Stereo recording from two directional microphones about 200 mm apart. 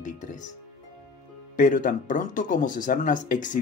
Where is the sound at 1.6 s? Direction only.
40° left (ahead or behind).